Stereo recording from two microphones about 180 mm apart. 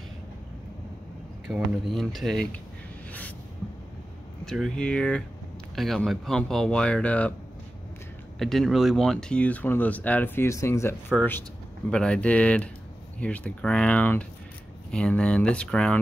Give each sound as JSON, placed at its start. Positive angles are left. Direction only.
{"t": 1.7, "sound": "speech", "side_deg": 0}
{"t": 4.5, "sound": "speech", "side_deg": 5}
{"t": 8.4, "sound": "speech", "side_deg": 0}